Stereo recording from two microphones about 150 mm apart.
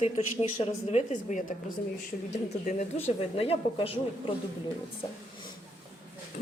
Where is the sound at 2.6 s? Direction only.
55° left (ahead or behind).